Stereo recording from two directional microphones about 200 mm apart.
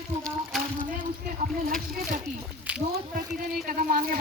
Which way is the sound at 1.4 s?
40° right (ahead or behind).